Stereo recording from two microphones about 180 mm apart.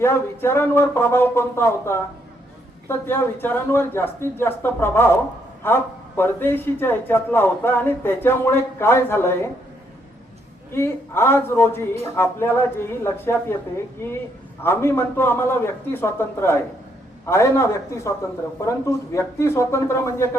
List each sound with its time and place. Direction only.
0.0 s a man's voice: 15° left (ahead or behind)
10.7 s a man's voice: 15° left (ahead or behind)